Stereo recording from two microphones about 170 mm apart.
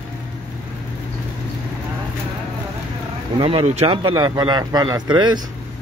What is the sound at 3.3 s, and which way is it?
Speech, 35° right (ahead or behind).